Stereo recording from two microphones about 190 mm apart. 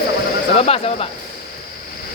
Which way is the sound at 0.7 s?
30° left (ahead or behind).